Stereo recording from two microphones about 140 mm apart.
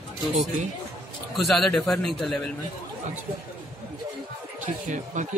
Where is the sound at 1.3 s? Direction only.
Centre (ahead or behind).